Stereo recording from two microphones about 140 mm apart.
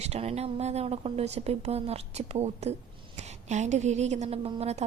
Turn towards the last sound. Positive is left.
turn(degrees=-50)  # may be behind; listen again after turning